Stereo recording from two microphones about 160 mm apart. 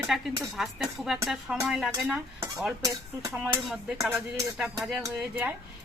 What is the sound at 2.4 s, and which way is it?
Dishes, 20° right (ahead or behind).